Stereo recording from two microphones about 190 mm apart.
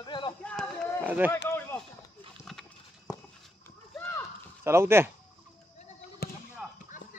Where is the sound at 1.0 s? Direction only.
10° right (ahead or behind).